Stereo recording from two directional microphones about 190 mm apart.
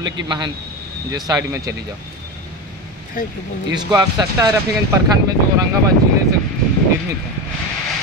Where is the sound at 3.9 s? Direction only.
20° right (ahead or behind).